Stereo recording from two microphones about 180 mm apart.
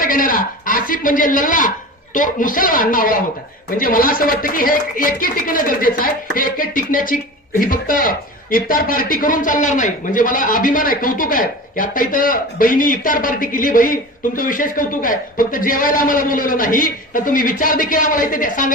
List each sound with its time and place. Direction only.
0.0 s a woman's voice: 50° left (ahead or behind)